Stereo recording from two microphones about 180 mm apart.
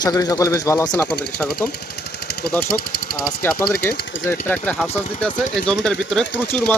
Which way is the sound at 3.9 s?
80° left.